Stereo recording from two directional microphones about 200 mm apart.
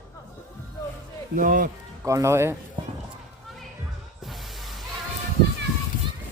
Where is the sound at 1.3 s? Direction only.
40° right (ahead or behind).